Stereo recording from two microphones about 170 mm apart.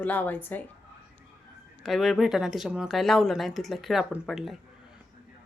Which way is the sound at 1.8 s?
Centre (ahead or behind).